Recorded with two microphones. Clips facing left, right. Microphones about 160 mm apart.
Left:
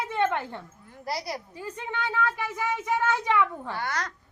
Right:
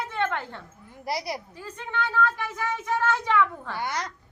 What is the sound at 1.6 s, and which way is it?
Child singing, 15° left (ahead or behind).